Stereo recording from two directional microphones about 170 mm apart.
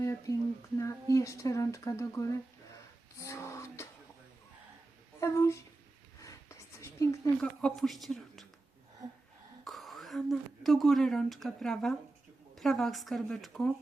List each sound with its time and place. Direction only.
0.0 s speech: 15° left (ahead or behind)
3.2 s a sound: 15° left (ahead or behind)
5.2 s speech: 15° left (ahead or behind)
6.2 s writing: 20° left (ahead or behind)
7.4 s a woman's voice: centre (ahead or behind)
9.6 s a woman's voice: centre (ahead or behind)